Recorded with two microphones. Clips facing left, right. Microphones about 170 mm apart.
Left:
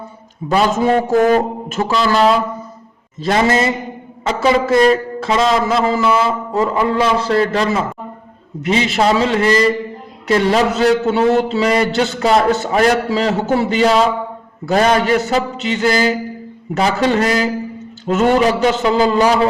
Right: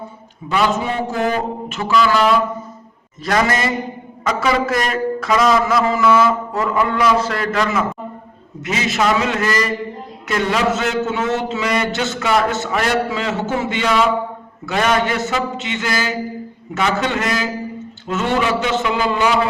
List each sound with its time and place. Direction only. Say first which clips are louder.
0.4 s a man's voice: left 4 dB; 40° left (ahead or behind)